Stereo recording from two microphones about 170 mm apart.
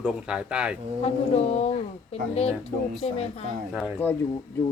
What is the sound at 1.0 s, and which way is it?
A woman's voice, 40° left (ahead or behind).